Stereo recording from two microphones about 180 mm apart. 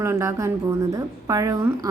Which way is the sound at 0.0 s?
15° right (ahead or behind).